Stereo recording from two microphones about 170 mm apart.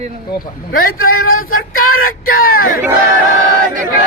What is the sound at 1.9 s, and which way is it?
Speech, 55° left (ahead or behind).